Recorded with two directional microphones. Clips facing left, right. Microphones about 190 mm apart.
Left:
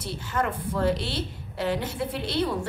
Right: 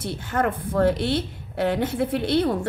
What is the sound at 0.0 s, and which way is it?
A woman's voice, 55° right (ahead or behind).